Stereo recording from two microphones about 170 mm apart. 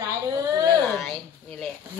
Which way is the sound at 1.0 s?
5° left (ahead or behind).